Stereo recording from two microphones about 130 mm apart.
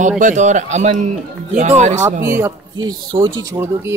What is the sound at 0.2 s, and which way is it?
Speech, 75° right (ahead or behind).